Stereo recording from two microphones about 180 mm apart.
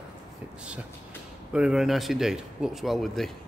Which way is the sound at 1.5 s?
5° right (ahead or behind).